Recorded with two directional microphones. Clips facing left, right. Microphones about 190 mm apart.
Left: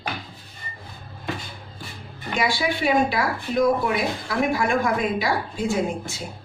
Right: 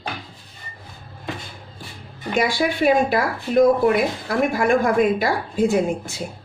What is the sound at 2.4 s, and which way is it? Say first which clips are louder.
Speech: right 4 dB; 50° right (ahead or behind).